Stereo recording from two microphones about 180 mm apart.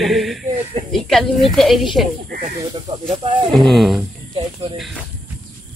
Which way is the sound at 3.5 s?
Centre (ahead or behind).